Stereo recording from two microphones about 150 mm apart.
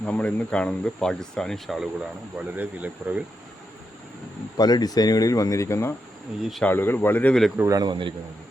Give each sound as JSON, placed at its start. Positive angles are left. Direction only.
{"t": 0.0, "sound": "speech", "side_deg": 10}
{"t": 2.6, "sound": "speech", "side_deg": -10}
{"t": 4.5, "sound": "speech", "side_deg": 25}
{"t": 6.4, "sound": "speech", "side_deg": 0}
{"t": 6.7, "sound": "speech", "side_deg": 15}
{"t": 7.5, "sound": "speech", "side_deg": -15}
{"t": 7.8, "sound": "a man's voice", "side_deg": -30}